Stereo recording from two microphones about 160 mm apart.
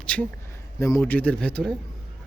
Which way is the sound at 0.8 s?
15° left (ahead or behind).